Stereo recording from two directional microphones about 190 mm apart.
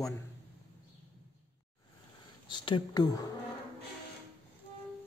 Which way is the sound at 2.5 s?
25° left (ahead or behind).